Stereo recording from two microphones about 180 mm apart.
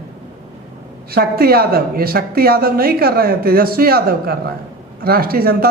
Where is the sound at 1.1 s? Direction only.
60° right (ahead or behind).